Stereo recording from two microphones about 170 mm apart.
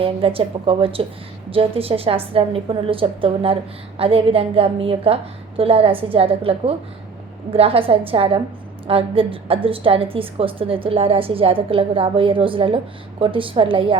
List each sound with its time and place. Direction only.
0.0 s a woman's voice: 35° right (ahead or behind)